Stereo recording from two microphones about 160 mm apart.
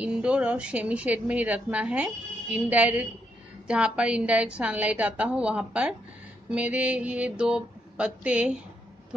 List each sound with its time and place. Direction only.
0.0 s a woman's voice: 5° right (ahead or behind)